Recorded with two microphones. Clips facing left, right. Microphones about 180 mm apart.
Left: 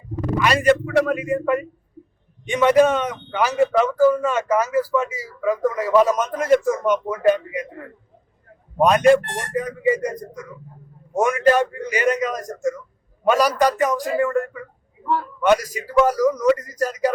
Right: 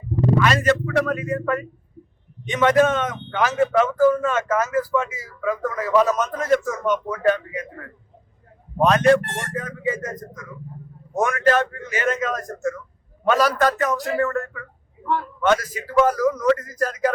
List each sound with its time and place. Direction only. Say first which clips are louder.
0.3 s speech: left 4 dB; 15° left (ahead or behind)
8.8 s speech: left 2 dB; 15° left (ahead or behind)